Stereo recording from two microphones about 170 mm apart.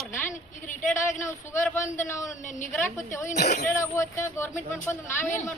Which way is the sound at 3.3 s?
75° left (ahead or behind).